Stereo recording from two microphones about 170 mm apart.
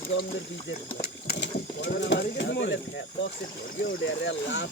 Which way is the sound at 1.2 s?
90° left.